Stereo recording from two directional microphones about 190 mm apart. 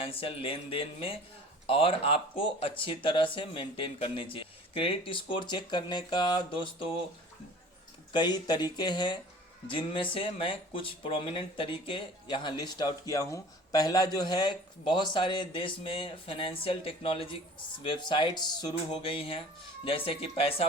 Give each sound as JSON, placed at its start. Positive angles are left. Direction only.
{"t": 0.0, "sound": "speech", "side_deg": 30}
{"t": 8.1, "sound": "speech", "side_deg": 20}